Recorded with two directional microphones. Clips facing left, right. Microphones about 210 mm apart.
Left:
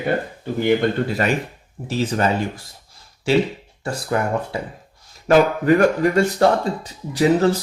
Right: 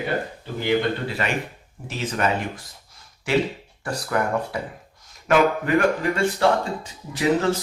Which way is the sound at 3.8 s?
25° left (ahead or behind).